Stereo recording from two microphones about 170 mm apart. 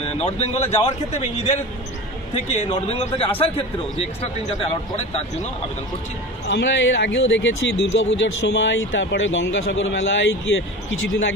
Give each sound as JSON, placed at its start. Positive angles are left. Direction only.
{"t": 0.0, "sound": "speech", "side_deg": 40}
{"t": 6.5, "sound": "speech", "side_deg": 90}